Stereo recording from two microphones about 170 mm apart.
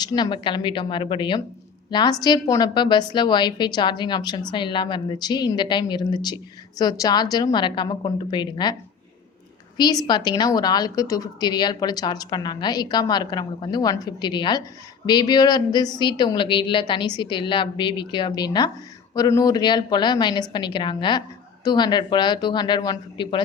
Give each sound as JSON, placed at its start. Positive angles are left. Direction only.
{"t": 0.0, "sound": "a woman's voice", "side_deg": 25}
{"t": 9.7, "sound": "a woman's voice", "side_deg": 25}